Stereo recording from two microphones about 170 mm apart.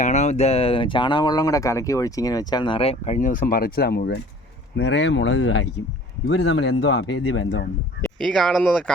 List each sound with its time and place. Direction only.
0.0 s speech: 45° left (ahead or behind)
3.2 s speech: 50° left (ahead or behind); by 4.2 s 75° left (ahead or behind)
4.8 s speech: 90° left
8.2 s speech: centre (ahead or behind)